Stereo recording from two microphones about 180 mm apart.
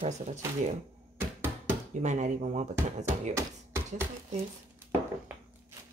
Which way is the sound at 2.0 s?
40° right (ahead or behind).